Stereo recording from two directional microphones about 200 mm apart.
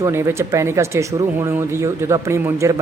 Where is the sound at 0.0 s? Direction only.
10° right (ahead or behind).